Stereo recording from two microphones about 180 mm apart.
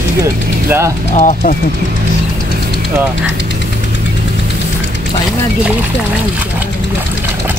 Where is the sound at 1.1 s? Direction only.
40° left (ahead or behind).